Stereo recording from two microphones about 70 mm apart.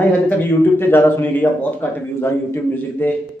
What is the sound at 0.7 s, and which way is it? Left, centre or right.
Speech, left.